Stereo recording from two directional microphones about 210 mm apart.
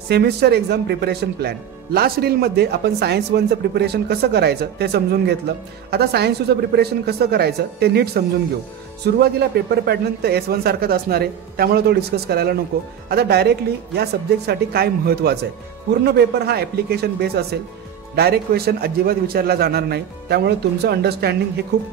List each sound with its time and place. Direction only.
0.1 s speech: 50° right (ahead or behind)